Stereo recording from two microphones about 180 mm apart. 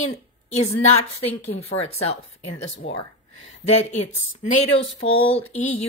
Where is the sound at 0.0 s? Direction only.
40° left (ahead or behind).